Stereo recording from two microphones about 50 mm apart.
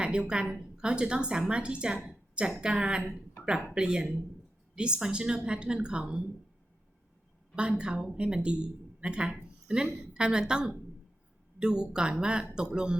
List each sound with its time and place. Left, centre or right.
0.0 s a woman's voice: centre
2.0 s a sound: centre
2.6 s a woman's voice: centre
7.5 s a woman's voice: right